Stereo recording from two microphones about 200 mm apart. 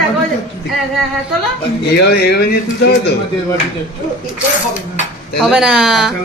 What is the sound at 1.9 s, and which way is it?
Speech, 55° left (ahead or behind).